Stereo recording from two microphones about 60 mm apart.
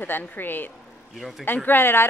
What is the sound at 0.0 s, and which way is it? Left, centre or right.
A woman's voice, left.